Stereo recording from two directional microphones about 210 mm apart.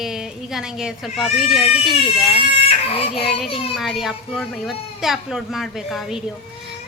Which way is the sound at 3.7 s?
Centre (ahead or behind).